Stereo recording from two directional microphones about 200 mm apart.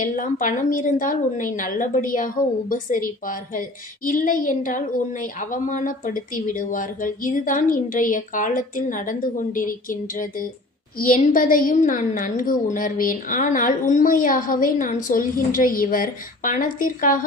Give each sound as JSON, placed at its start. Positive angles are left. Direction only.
{"t": 0.0, "sound": "a woman's voice", "side_deg": 40}